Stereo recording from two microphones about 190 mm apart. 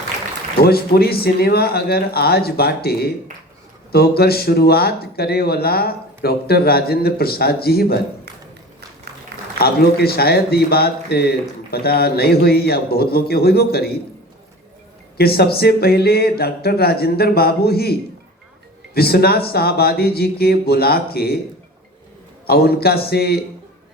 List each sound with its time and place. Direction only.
0.6 s speech: 55° left (ahead or behind)
9.6 s speech: 55° left (ahead or behind)
15.2 s speech: 55° left (ahead or behind)
18.9 s speech: 55° left (ahead or behind)
22.4 s speech: 55° left (ahead or behind)